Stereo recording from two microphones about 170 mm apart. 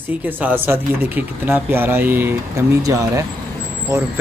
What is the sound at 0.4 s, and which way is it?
Speech, 10° right (ahead or behind).